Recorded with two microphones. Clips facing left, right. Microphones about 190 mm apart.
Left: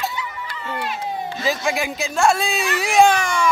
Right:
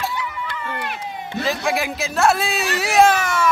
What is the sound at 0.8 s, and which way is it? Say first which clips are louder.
Crowd: left 3 dB; 60° right (ahead or behind).